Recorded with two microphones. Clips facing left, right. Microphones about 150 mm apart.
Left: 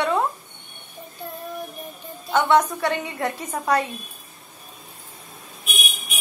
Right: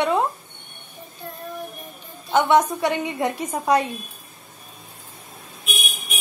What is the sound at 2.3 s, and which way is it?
A woman's voice, 15° right (ahead or behind).